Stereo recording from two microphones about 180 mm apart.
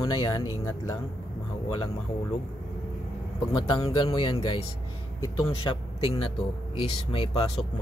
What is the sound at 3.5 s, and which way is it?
Speech, 25° left (ahead or behind).